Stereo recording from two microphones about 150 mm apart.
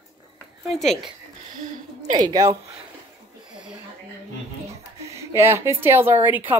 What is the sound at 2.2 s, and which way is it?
Speech, 25° right (ahead or behind).